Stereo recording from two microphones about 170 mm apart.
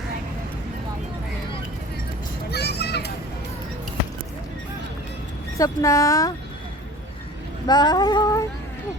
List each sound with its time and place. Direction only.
2.5 s children playing: 75° left (ahead or behind)
5.5 s female singing: 20° left (ahead or behind)
7.7 s female singing: 25° left (ahead or behind)